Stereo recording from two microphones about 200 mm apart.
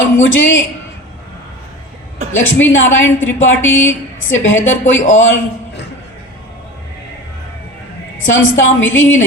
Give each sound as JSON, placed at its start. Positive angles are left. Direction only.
{"t": 0.0, "sound": "a man's voice", "side_deg": 75}
{"t": 2.3, "sound": "a man's voice", "side_deg": 75}
{"t": 8.2, "sound": "a man's voice", "side_deg": 75}